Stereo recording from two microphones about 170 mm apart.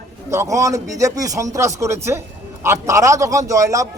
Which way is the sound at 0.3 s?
20° right (ahead or behind).